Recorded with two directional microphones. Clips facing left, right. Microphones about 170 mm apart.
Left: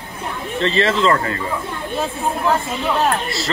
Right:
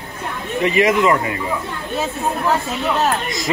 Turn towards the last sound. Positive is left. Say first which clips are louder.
# right 1 dB
turn(degrees=-15)  # may be behind; listen again after turning